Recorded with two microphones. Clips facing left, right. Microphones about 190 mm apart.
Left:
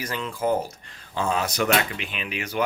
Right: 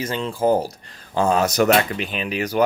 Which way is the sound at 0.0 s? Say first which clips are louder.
Right 6 dB; 30° right (ahead or behind).